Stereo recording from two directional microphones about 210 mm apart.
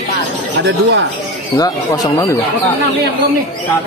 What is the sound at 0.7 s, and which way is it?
Speech, 55° right (ahead or behind).